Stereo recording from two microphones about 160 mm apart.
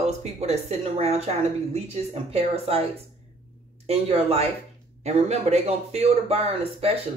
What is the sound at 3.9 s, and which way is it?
A man's voice, 40° right (ahead or behind).